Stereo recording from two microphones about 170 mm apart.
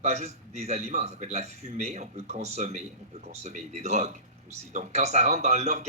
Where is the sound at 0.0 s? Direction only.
40° right (ahead or behind).